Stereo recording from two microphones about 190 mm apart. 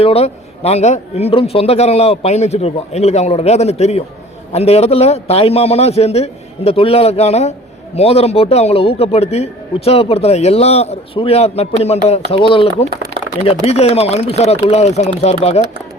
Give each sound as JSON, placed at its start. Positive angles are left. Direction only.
{"t": 0.0, "sound": "a man's voice", "side_deg": 30}